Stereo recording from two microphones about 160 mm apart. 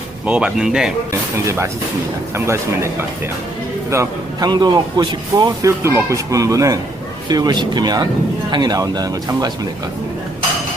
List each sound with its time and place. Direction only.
0.3 s speech: 5° right (ahead or behind)
1.5 s a man's voice: 15° right (ahead or behind)